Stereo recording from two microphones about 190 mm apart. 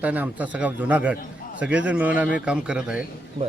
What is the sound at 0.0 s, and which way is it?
A man's voice, 10° right (ahead or behind).